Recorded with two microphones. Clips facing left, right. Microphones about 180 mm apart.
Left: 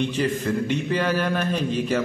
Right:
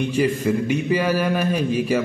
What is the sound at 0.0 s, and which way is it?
A man's voice, 10° right (ahead or behind).